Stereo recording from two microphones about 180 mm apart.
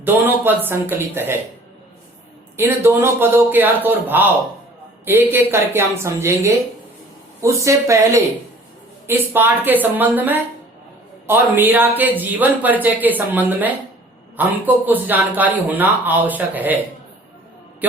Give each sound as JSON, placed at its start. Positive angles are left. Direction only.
{"t": 0.0, "sound": "speech", "side_deg": -10}
{"t": 2.6, "sound": "speech", "side_deg": -15}